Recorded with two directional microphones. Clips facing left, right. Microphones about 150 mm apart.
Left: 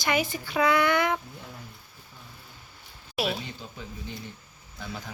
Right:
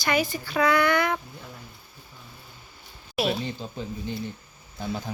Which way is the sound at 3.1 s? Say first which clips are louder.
Right 3 dB; 5° left (ahead or behind).